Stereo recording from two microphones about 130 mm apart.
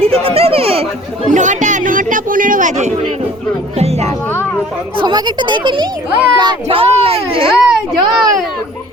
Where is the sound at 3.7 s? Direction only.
55° right (ahead or behind).